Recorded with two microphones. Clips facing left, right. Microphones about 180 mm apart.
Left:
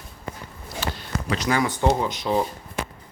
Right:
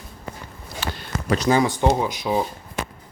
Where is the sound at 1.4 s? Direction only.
25° right (ahead or behind).